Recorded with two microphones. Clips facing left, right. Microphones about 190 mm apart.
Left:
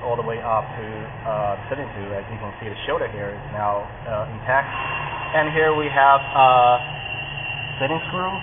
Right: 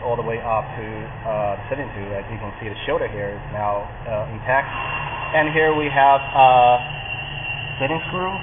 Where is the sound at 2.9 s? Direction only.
15° right (ahead or behind).